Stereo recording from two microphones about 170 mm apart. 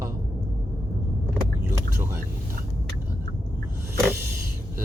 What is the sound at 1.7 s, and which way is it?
Vehicle, 15° right (ahead or behind).